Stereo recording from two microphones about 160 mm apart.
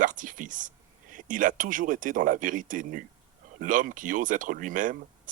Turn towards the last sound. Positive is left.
turn(degrees=-55)  # may be behind; listen again after turning